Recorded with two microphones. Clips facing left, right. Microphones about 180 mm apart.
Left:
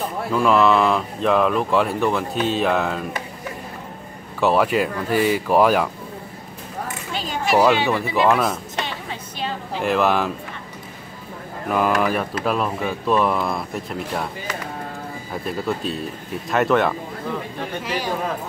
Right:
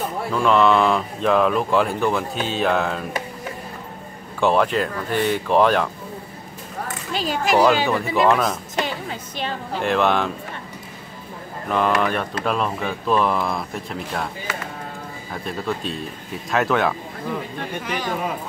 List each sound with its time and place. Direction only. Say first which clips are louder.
0.3 s speech: even; 5° left (ahead or behind)
4.4 s speech: left 1 dB; 5° left (ahead or behind)
7.2 s speech: even; 5° left (ahead or behind)
9.8 s speech: even; centre (ahead or behind)
11.7 s speech: left 1 dB; 5° left (ahead or behind)